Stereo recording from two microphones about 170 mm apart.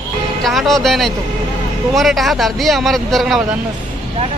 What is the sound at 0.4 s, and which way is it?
Speech, centre (ahead or behind).